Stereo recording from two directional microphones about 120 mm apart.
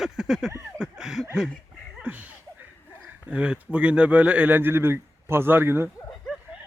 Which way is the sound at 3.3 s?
10° right (ahead or behind).